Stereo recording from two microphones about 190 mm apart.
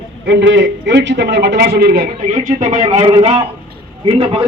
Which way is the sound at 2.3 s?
40° right (ahead or behind).